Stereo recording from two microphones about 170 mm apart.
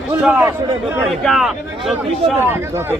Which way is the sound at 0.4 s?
15° right (ahead or behind).